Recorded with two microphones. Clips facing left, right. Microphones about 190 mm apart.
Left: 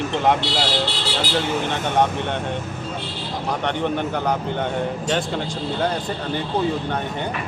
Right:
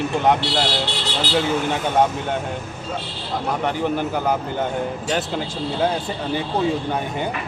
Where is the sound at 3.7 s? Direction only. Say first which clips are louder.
Even; 5° right (ahead or behind).